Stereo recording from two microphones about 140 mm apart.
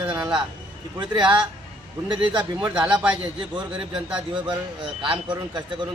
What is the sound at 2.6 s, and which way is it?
A man's voice, 10° right (ahead or behind).